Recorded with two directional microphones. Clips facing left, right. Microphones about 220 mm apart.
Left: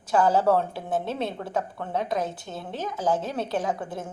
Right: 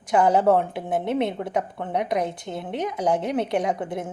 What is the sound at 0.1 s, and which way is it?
A woman's voice, 20° right (ahead or behind).